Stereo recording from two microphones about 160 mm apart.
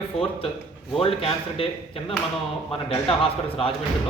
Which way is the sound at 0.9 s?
35° left (ahead or behind).